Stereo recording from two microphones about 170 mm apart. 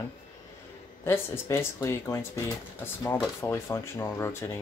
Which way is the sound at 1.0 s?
15° left (ahead or behind).